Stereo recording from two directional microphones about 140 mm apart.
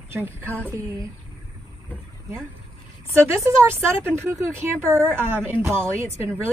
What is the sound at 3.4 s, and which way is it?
Speech, 15° right (ahead or behind).